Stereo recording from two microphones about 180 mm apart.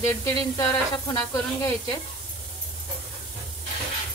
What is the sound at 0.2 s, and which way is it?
Speech, 20° left (ahead or behind).